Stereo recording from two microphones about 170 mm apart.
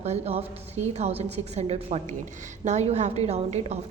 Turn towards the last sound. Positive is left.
turn(degrees=-40)  # may be behind; listen again after turning